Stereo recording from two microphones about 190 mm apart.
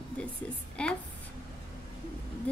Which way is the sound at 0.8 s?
5° left (ahead or behind).